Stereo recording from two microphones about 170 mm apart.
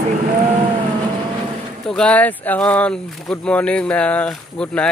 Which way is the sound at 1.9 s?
5° left (ahead or behind).